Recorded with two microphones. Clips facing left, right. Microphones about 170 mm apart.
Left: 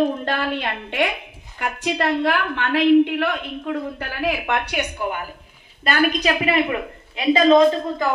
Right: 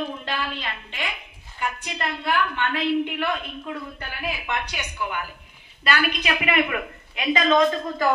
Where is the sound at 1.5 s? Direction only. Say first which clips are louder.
Left 6 dB; 85° left; by 5.1 s 55° left (ahead or behind).